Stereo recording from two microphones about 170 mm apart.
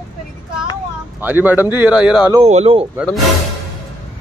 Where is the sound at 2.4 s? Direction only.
35° right (ahead or behind).